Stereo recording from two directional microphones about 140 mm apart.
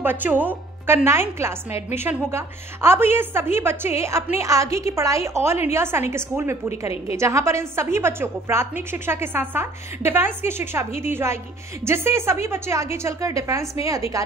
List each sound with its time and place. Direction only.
0.0 s a woman's voice: 15° right (ahead or behind)